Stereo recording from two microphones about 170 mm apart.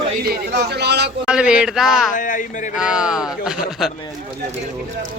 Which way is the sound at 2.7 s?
5° right (ahead or behind).